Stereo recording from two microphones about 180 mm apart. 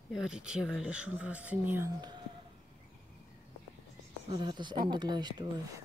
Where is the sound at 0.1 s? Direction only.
5° right (ahead or behind).